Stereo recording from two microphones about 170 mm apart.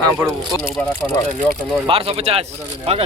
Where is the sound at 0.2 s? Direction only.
15° right (ahead or behind).